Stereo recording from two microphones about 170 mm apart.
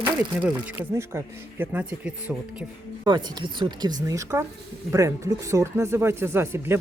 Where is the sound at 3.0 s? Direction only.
25° right (ahead or behind).